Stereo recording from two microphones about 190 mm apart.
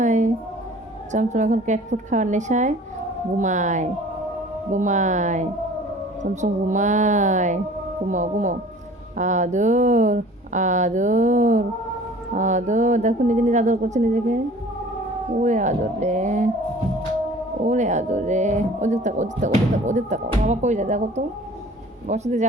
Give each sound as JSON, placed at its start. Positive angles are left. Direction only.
{"t": 0.0, "sound": "a sound", "side_deg": -40}
{"t": 1.1, "sound": "speech", "side_deg": -40}
{"t": 15.4, "sound": "speech", "side_deg": -40}
{"t": 17.7, "sound": "speech", "side_deg": -40}